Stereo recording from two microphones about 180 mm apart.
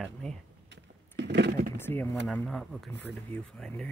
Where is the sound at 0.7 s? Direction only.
85° right.